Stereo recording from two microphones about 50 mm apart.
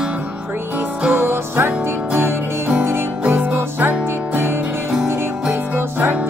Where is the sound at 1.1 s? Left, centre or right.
Right.